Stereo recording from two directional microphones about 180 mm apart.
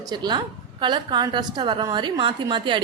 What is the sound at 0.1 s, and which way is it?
A woman's voice, 25° right (ahead or behind).